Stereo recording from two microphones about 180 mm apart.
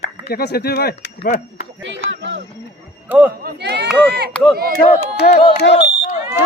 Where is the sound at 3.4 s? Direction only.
65° right (ahead or behind).